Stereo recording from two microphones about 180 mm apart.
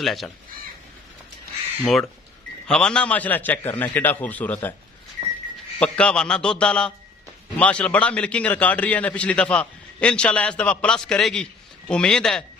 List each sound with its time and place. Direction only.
0.0 s a man's voice: centre (ahead or behind)
1.8 s a man's voice: centre (ahead or behind)
5.8 s a man's voice: 5° left (ahead or behind)